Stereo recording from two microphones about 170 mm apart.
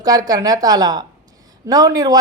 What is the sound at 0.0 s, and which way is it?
Speech, 20° right (ahead or behind).